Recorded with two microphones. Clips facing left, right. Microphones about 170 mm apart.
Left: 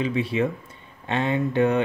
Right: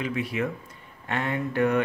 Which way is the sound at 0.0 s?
30° left (ahead or behind).